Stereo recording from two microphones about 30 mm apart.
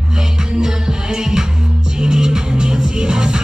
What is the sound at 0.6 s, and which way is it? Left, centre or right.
Music, right.